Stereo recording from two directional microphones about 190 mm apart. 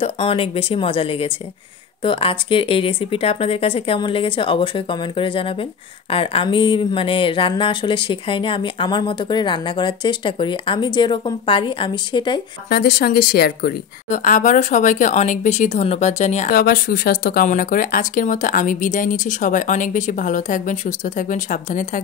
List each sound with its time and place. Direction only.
0.0 s speech: 30° left (ahead or behind)
12.6 s a woman's voice: 50° left (ahead or behind)